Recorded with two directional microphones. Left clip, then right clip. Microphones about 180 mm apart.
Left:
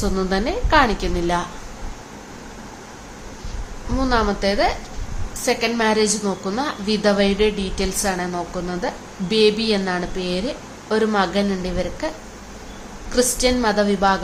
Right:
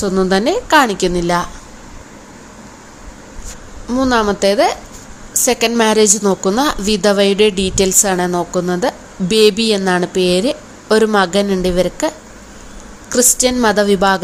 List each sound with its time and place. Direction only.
0.0 s a woman's voice: 35° right (ahead or behind)
3.9 s a woman's voice: 30° right (ahead or behind)